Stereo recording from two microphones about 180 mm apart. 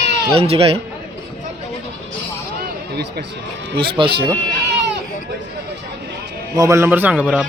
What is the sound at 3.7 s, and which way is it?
Speech, 30° right (ahead or behind).